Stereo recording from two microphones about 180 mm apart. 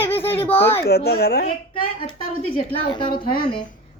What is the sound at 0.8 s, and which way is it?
Speech, 60° left (ahead or behind).